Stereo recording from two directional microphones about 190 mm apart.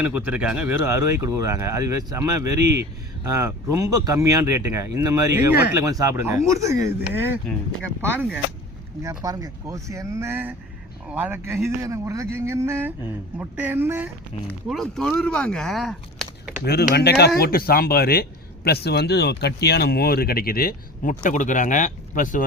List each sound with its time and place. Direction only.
0.0 s speech: 10° right (ahead or behind)
14.7 s speech: centre (ahead or behind)
16.6 s speech: 55° left (ahead or behind)